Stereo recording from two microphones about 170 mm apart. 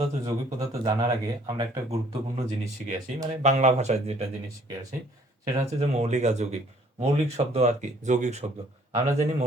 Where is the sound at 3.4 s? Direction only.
40° right (ahead or behind).